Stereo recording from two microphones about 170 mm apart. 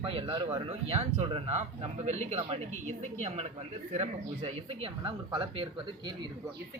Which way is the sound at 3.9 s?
40° right (ahead or behind).